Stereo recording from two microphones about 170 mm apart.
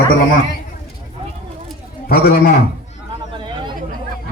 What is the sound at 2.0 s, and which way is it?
Speech, 65° left (ahead or behind).